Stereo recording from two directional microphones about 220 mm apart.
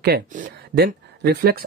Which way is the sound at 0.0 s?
40° right (ahead or behind).